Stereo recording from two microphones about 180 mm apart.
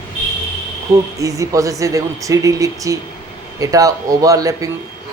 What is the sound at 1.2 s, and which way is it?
A man's voice, 20° right (ahead or behind).